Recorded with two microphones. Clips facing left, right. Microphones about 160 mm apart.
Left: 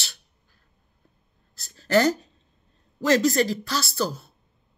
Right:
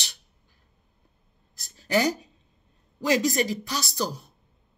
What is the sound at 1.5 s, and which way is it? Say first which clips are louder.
Speech: left 4 dB; 15° right (ahead or behind).